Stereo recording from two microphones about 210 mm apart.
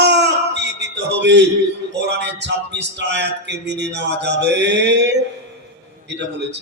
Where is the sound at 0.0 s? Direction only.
55° right (ahead or behind).